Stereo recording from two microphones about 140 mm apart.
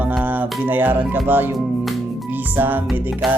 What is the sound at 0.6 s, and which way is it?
Speech, 15° right (ahead or behind).